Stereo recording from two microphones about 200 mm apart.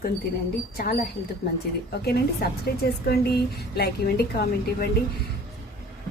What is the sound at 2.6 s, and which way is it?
A woman's voice, 50° left (ahead or behind).